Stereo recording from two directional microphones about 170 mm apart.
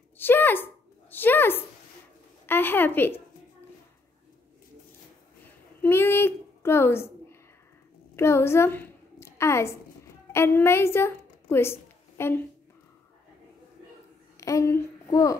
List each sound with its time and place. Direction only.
0.2 s a woman's voice: 10° left (ahead or behind)
5.8 s a woman's voice: 15° left (ahead or behind)
14.3 s speech: 20° left (ahead or behind)